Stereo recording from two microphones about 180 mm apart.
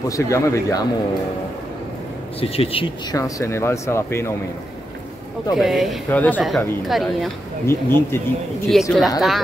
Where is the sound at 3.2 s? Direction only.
15° left (ahead or behind).